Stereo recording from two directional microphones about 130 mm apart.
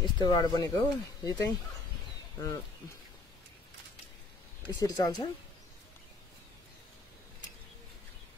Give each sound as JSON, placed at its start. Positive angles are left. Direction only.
{"t": 0.0, "sound": "speech", "side_deg": 30}
{"t": 4.6, "sound": "speech", "side_deg": 30}